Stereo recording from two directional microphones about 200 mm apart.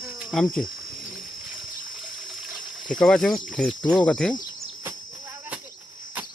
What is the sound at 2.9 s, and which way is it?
Speech, 5° left (ahead or behind).